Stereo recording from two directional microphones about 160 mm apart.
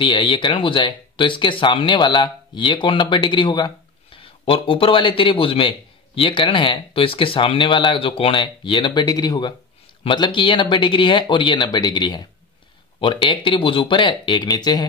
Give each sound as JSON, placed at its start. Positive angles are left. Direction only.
{"t": 0.0, "sound": "speech", "side_deg": 30}